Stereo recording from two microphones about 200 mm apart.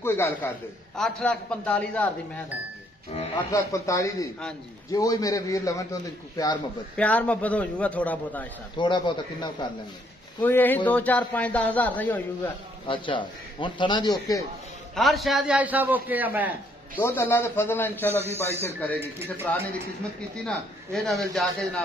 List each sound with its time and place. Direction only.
0.0 s a man's voice: 10° left (ahead or behind)
3.1 s a man's voice: 30° left (ahead or behind)
3.5 s a man's voice: 15° left (ahead or behind)
7.0 s speech: 5° left (ahead or behind)
8.7 s a man's voice: 25° left (ahead or behind)
10.4 s speech: 10° left (ahead or behind)
12.8 s a man's voice: 25° left (ahead or behind)
15.0 s a man's voice: centre (ahead or behind)
16.9 s a man's voice: 10° left (ahead or behind)